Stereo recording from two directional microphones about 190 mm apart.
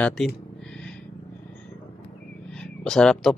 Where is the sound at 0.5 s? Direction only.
5° left (ahead or behind).